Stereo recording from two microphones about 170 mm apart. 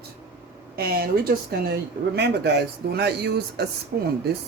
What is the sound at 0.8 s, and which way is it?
Speech, 65° right (ahead or behind).